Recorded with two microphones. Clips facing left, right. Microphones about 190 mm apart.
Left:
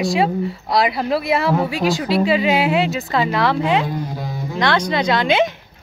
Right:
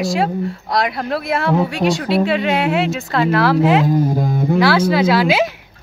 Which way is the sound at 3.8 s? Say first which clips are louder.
Right 9 dB; 50° right (ahead or behind).